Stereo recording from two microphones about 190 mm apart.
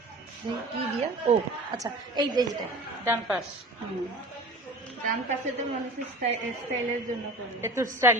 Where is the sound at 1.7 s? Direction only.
20° right (ahead or behind).